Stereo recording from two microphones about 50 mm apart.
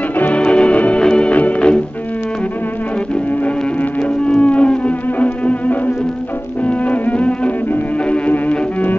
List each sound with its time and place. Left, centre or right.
0.2 s music: left
4.4 s music: left